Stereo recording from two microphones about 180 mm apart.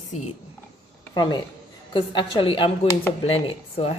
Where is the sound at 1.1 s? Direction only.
25° left (ahead or behind).